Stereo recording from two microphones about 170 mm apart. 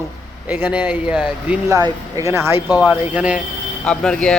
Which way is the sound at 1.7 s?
20° right (ahead or behind).